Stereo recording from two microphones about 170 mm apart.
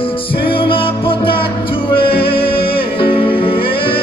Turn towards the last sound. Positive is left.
turn(degrees=30)  # may be behind; listen again after turning